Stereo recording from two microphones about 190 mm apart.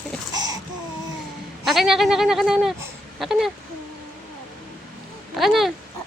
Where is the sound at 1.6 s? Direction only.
Centre (ahead or behind).